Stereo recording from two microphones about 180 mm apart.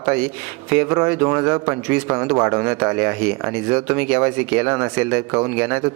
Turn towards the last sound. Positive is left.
turn(degrees=-10)  # may be behind; listen again after turning